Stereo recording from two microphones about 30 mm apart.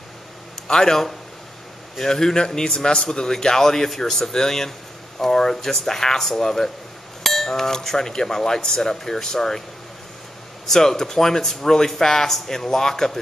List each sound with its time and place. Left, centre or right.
0.7 s speech: centre
10.7 s speech: centre